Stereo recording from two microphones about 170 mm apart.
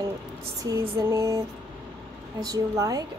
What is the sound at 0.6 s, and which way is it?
Female singing, 20° right (ahead or behind).